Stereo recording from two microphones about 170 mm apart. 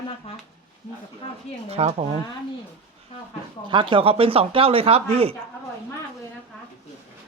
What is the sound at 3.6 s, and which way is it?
Speech, 30° right (ahead or behind).